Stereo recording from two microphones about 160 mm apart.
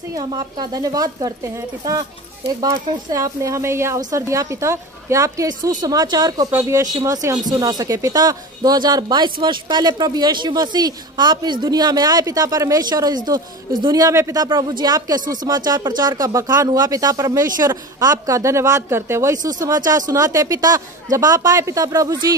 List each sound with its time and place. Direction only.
0.1 s speech: 25° right (ahead or behind)
2.6 s speech: 20° right (ahead or behind)